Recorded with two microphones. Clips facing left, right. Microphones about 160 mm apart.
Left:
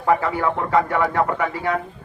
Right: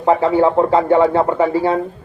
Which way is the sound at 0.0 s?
25° right (ahead or behind).